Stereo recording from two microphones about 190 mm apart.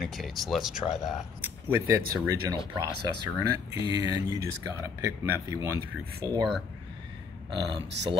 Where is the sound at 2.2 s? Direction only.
20° right (ahead or behind).